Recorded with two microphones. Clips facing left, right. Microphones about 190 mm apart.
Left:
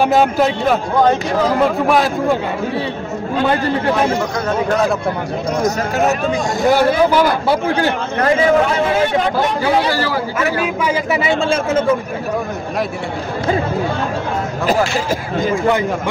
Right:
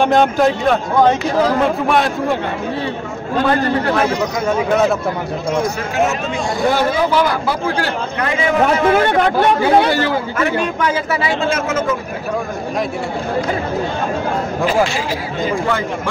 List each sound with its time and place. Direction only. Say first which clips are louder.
0.0 s a man's voice: right 1 dB; 5° left (ahead or behind)
1.9 s a man's voice: left 1 dB; centre (ahead or behind)
4.5 s a man's voice: right 2 dB; 5° right (ahead or behind)
7.4 s speech: left 3 dB; 20° left (ahead or behind)
8.2 s a man's voice: left 3 dB; 40° left (ahead or behind)
9.8 s a man's voice: right 2 dB; 20° right (ahead or behind)
10.4 s a man's voice: even; 5° left (ahead or behind)
11.2 s a man's voice: left 2 dB; 30° left (ahead or behind)